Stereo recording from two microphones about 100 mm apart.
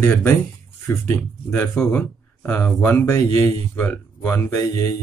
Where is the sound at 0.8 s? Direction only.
20° left (ahead or behind).